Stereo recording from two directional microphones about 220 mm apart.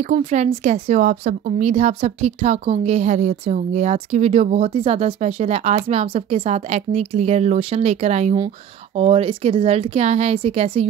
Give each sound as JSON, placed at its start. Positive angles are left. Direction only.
{"t": 0.0, "sound": "speech", "side_deg": -30}